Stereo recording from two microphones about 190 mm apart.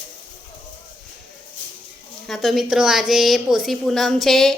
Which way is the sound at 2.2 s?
Centre (ahead or behind).